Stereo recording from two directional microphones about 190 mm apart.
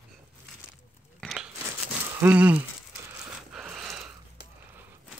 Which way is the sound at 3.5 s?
5° right (ahead or behind).